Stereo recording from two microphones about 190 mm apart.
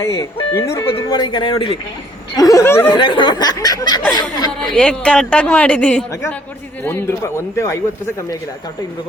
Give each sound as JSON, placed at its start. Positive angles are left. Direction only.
{"t": 0.0, "sound": "a man's voice", "side_deg": 15}
{"t": 2.9, "sound": "speech", "side_deg": 25}
{"t": 4.6, "sound": "a man's voice", "side_deg": 5}